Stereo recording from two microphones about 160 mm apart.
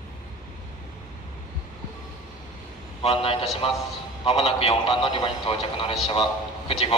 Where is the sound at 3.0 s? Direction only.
35° left (ahead or behind).